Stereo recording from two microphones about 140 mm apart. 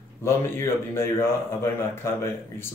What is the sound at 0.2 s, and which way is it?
A man's voice, 20° left (ahead or behind).